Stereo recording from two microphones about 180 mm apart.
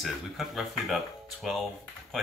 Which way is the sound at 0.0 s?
Centre (ahead or behind).